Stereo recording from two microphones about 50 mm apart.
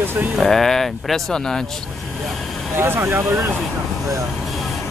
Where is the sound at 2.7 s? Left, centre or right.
Right.